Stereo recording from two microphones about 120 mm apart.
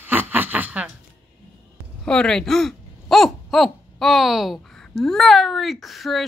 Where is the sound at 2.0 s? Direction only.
5° left (ahead or behind).